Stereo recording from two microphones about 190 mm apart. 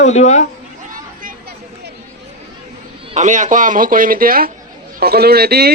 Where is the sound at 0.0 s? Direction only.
35° left (ahead or behind).